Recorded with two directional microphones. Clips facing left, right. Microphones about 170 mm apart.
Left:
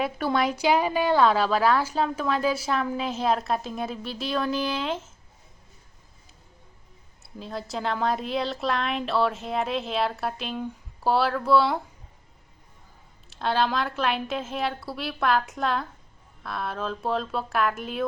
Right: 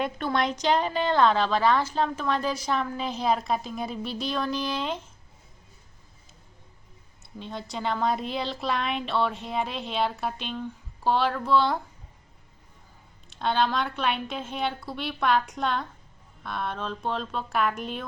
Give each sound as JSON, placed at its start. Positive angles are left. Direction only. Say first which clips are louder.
{"t": 0.3, "sound": "a woman's voice", "louder": "left 2 dB", "side_deg": 10}
{"t": 7.2, "sound": "a woman's voice", "louder": "left 2 dB", "side_deg": 0}
{"t": 13.3, "sound": "a woman's voice", "louder": "even", "side_deg": 0}